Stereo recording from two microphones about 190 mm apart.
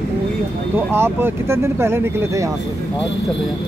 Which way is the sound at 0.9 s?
10° right (ahead or behind).